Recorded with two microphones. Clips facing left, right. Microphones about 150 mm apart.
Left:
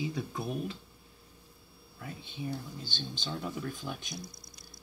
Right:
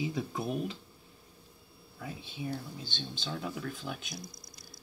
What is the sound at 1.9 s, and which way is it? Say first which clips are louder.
Speech: right 1 dB; 10° right (ahead or behind).